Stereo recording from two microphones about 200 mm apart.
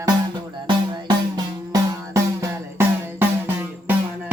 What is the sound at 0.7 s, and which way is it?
Music, 20° right (ahead or behind).